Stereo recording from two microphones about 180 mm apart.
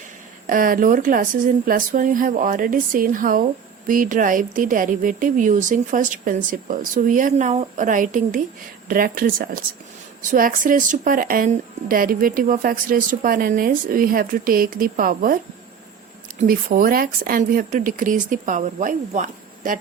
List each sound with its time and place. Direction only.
0.4 s speech: 50° right (ahead or behind)
16.4 s speech: 50° right (ahead or behind)